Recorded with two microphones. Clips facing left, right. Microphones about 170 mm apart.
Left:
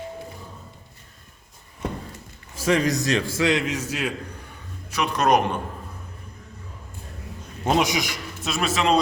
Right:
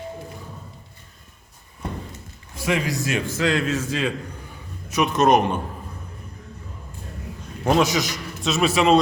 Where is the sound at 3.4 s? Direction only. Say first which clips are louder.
Even; 20° left (ahead or behind).